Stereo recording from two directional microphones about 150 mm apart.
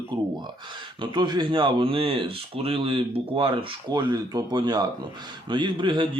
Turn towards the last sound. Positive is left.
turn(degrees=-30)  # may be behind; listen again after turning